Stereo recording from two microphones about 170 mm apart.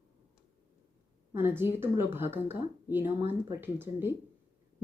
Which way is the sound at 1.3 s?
15° right (ahead or behind).